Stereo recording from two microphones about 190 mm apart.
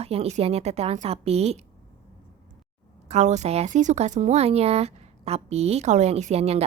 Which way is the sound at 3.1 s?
35° right (ahead or behind).